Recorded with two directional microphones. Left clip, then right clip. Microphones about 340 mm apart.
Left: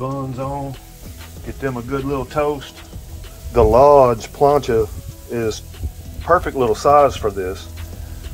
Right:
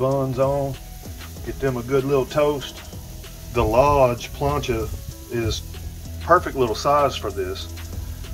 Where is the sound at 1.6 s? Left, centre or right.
Centre.